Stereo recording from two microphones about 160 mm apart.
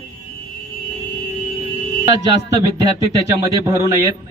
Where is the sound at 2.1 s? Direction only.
20° right (ahead or behind).